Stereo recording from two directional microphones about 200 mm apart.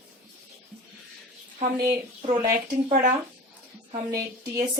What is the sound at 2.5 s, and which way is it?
Speech, 40° right (ahead or behind).